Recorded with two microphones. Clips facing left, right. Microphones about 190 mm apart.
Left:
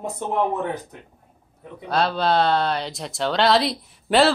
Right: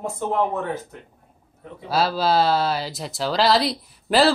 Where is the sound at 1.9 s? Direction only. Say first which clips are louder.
Even; 5° right (ahead or behind).